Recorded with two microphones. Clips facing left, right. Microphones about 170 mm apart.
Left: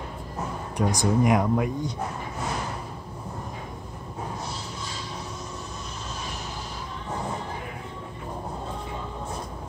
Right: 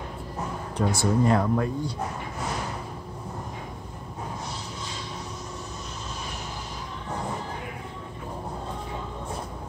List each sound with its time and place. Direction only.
0.7 s speech: 15° left (ahead or behind)